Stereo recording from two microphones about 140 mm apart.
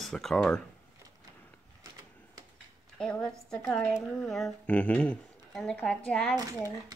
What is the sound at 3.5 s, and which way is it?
Speech, 5° left (ahead or behind).